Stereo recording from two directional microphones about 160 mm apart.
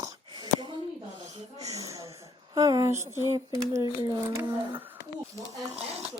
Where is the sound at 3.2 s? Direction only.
20° right (ahead or behind).